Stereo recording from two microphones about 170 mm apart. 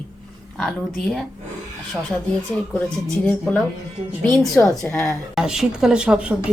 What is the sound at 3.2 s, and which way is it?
A woman's voice, 5° left (ahead or behind).